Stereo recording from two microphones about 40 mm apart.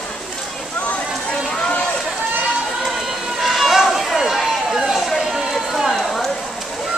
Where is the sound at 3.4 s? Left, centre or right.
Centre.